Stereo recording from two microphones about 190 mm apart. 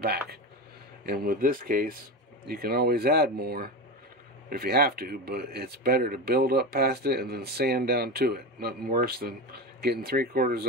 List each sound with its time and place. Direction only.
0.0 s speech: 55° right (ahead or behind)